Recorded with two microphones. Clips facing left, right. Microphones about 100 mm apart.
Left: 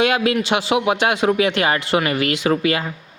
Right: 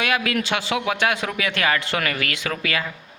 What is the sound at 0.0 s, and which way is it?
A man's voice, 25° left (ahead or behind).